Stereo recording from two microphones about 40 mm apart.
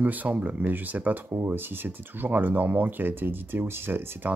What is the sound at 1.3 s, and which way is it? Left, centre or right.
Speech, right.